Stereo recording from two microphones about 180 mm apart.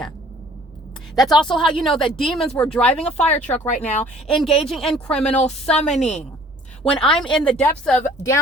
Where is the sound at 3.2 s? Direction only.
40° left (ahead or behind).